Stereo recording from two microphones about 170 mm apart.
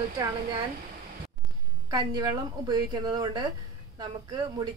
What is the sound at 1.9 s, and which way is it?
A woman's voice, 25° right (ahead or behind).